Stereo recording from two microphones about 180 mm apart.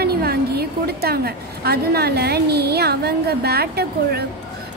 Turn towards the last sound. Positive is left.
turn(degrees=-60)  # may be behind; listen again after turning